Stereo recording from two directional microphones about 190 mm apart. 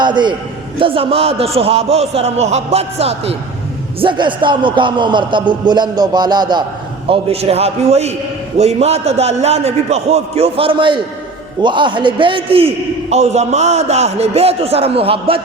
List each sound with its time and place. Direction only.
0.0 s a man's voice: 25° right (ahead or behind)